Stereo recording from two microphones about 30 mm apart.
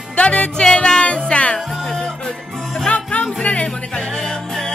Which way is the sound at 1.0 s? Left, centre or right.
Left.